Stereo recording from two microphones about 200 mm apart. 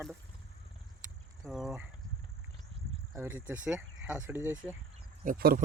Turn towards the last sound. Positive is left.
turn(degrees=-45)  # may be behind; listen again after turning